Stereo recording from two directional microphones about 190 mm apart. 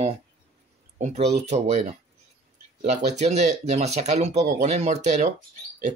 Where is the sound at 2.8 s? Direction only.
35° right (ahead or behind).